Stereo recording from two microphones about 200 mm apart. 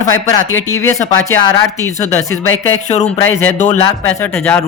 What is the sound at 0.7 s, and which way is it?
Speech, 15° left (ahead or behind).